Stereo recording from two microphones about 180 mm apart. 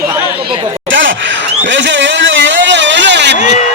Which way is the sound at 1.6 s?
90° right.